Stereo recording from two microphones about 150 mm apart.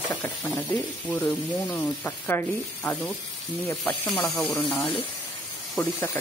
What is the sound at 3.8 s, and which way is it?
Speech, 5° left (ahead or behind).